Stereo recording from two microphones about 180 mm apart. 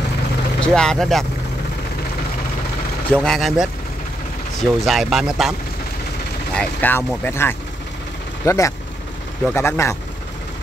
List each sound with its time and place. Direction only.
0.6 s speech: 5° left (ahead or behind)
3.1 s speech: centre (ahead or behind)
6.5 s speech: 10° left (ahead or behind)